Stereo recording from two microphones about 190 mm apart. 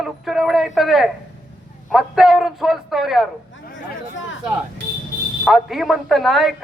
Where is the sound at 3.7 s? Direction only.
80° left.